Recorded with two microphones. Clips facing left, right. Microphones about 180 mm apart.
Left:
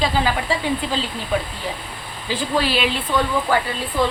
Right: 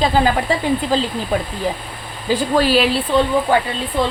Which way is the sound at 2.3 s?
40° right (ahead or behind).